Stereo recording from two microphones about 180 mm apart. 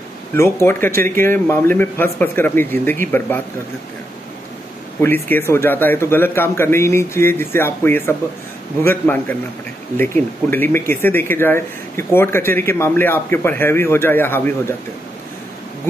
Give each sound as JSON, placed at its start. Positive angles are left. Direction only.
{"t": 0.3, "sound": "speech", "side_deg": 15}
{"t": 5.0, "sound": "speech", "side_deg": 10}